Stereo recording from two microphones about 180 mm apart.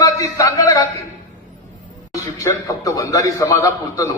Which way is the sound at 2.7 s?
20° left (ahead or behind).